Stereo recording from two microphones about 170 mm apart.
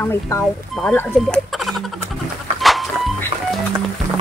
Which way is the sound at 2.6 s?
Centre (ahead or behind).